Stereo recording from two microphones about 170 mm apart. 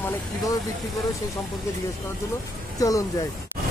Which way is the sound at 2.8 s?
20° left (ahead or behind).